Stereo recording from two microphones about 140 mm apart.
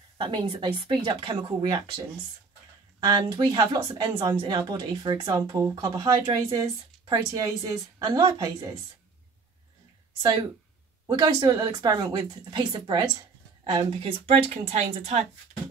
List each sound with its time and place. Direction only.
0.2 s a woman's voice: 35° right (ahead or behind)
3.0 s a woman's voice: 30° right (ahead or behind)
11.1 s a woman's voice: 30° right (ahead or behind)
14.2 s speech: 50° right (ahead or behind)